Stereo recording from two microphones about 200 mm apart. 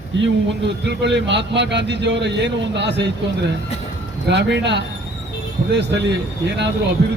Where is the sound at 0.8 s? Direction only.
60° right (ahead or behind).